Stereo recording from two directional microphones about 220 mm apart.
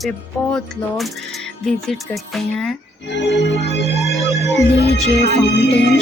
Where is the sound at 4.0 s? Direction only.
Centre (ahead or behind).